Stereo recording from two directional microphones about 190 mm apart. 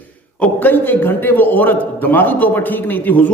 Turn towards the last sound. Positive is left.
turn(degrees=10)  # may be behind; listen again after turning